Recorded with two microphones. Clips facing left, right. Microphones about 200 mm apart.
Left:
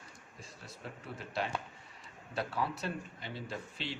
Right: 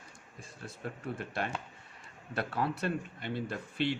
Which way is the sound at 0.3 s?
50° right (ahead or behind).